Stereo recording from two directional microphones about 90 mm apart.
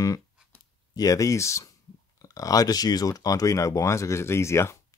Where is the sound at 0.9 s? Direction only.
40° left (ahead or behind).